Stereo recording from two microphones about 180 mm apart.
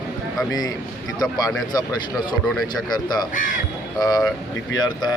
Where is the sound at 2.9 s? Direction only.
25° left (ahead or behind).